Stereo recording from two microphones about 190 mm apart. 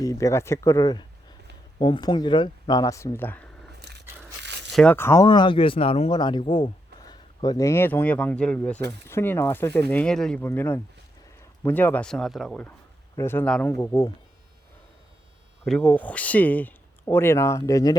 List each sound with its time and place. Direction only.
0.0 s speech: 15° left (ahead or behind)
3.8 s a sound: 60° right (ahead or behind)
4.4 s tearing: 65° right (ahead or behind)
4.7 s speech: 5° left (ahead or behind)
15.6 s speech: 5° left (ahead or behind)